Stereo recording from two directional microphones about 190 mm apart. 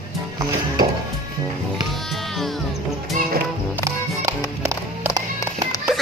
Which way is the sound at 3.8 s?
20° right (ahead or behind).